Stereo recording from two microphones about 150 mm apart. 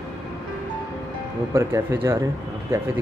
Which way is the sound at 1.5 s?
15° right (ahead or behind).